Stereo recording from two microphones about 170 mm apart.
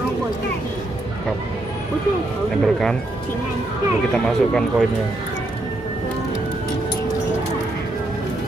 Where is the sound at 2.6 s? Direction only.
Centre (ahead or behind).